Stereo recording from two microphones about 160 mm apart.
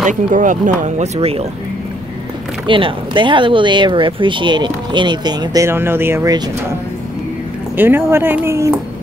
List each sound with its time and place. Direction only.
0.0 s speech: 50° right (ahead or behind)
2.6 s speech: 30° right (ahead or behind)
7.7 s speech: 15° right (ahead or behind)